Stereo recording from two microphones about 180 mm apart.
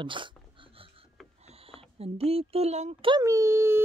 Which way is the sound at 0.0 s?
25° right (ahead or behind).